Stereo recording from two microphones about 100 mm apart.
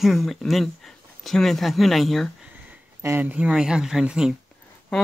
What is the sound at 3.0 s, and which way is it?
Speech, 25° right (ahead or behind).